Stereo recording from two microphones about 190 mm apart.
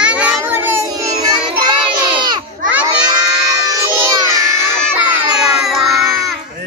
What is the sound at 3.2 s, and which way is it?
Music, 20° right (ahead or behind).